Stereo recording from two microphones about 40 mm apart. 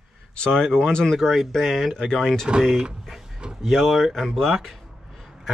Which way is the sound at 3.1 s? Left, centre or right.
Centre.